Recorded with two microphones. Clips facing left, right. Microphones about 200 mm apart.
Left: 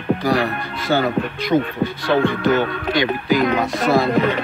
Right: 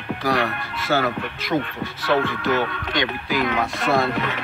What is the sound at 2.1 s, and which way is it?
Speech, 30° left (ahead or behind).